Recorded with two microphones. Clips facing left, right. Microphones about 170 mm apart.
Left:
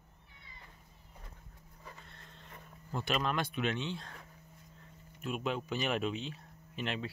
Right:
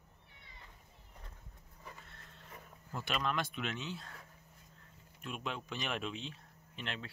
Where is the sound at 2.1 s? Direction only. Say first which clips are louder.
Left 1 dB; 5° right (ahead or behind).